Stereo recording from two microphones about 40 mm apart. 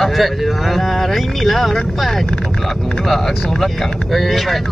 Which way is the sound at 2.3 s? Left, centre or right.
Centre.